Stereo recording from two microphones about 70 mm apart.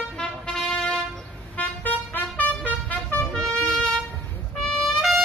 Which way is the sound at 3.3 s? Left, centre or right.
Centre.